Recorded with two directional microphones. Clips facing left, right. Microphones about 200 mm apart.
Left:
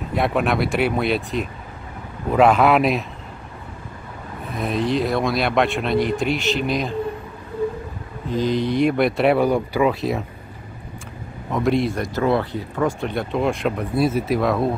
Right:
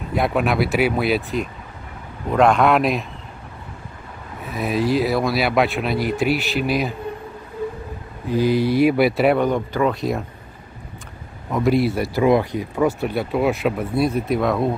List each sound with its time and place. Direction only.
0.1 s speech: centre (ahead or behind)
4.6 s speech: 5° right (ahead or behind)
8.3 s speech: 10° right (ahead or behind)
9.4 s speech: 10° left (ahead or behind)
11.5 s speech: centre (ahead or behind)